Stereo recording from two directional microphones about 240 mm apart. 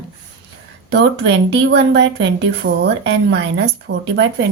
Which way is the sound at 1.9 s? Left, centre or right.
Right.